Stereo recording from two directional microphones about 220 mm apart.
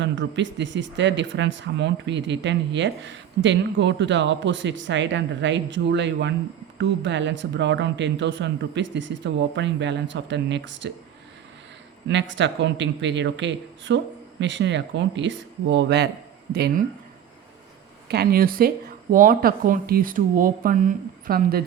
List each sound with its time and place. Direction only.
0.0 s speech: 55° right (ahead or behind)
12.0 s speech: 55° right (ahead or behind)
18.1 s speech: 45° right (ahead or behind)